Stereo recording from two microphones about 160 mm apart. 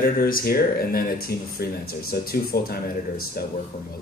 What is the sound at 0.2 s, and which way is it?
Speech, 70° left (ahead or behind).